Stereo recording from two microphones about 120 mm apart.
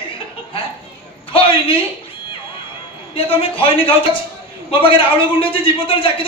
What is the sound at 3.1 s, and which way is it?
A woman's voice, 50° left (ahead or behind).